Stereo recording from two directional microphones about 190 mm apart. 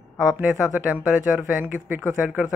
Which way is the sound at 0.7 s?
5° right (ahead or behind).